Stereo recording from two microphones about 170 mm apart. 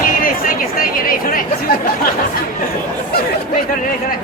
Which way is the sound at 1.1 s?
55° left (ahead or behind).